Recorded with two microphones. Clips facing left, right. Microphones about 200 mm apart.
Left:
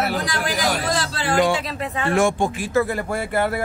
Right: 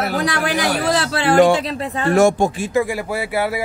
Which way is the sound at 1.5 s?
40° right (ahead or behind).